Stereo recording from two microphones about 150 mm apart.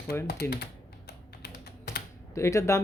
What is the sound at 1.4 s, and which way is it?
Typing, 90° left.